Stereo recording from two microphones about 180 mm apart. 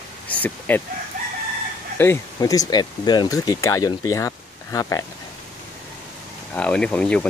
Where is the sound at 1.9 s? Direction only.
15° left (ahead or behind).